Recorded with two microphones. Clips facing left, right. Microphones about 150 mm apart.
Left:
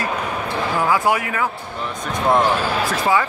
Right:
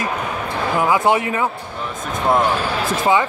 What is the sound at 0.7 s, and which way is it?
Speech, 20° right (ahead or behind).